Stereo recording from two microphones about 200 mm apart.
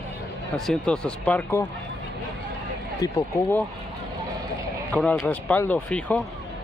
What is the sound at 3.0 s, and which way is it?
Speech, 20° left (ahead or behind).